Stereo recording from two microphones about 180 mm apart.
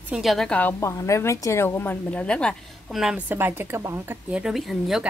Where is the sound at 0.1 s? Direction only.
Centre (ahead or behind).